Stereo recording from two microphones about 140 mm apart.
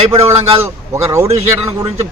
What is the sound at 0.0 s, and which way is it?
Speech, 45° right (ahead or behind).